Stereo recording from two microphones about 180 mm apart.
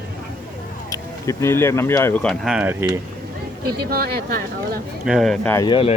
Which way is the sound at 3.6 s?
55° right (ahead or behind).